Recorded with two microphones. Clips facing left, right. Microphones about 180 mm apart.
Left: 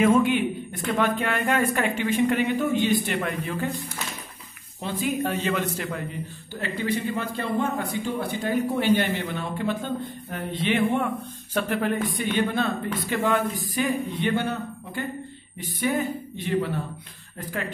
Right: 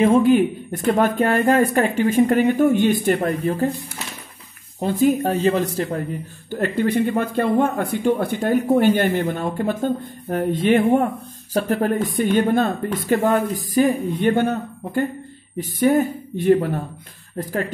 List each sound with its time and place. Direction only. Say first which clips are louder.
0.0 s speech: right 5 dB; 35° right (ahead or behind)
3.2 s speech: right 7 dB; 40° right (ahead or behind)
4.7 s speech: right 9 dB; 45° right (ahead or behind)
6.5 s speech: right 8 dB; 55° right (ahead or behind)